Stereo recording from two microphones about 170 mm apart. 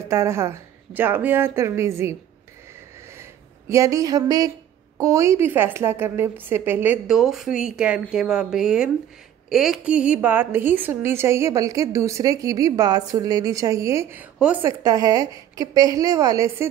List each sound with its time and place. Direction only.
0.0 s a woman's voice: 15° right (ahead or behind)
3.2 s a sound: 15° right (ahead or behind)
4.9 s a woman's voice: 15° right (ahead or behind)